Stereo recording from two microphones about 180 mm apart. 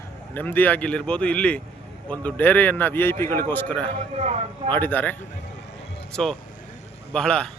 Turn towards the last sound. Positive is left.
turn(degrees=5)  # may be behind; listen again after turning